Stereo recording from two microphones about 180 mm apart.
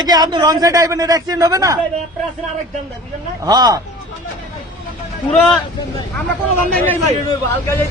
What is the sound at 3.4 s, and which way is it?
Speech, 20° right (ahead or behind).